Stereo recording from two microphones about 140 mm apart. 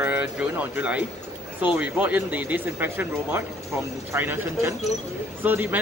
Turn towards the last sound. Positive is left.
turn(degrees=-15)  # may be behind; listen again after turning